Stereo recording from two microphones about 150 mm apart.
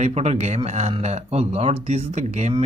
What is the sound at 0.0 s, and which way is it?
Speech, 45° right (ahead or behind).